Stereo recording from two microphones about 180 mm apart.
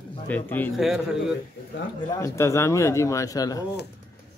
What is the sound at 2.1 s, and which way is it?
Speech, 15° left (ahead or behind).